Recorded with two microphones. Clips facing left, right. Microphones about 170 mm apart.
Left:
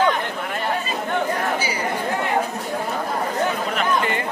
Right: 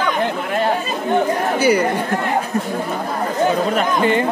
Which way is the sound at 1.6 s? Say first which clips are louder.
Right 11 dB; 60° right (ahead or behind).